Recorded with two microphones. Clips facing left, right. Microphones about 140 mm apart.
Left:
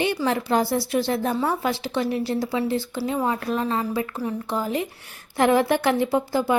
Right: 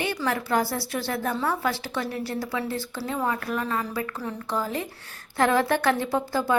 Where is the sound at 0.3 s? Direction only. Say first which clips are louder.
Left 1 dB; 20° left (ahead or behind).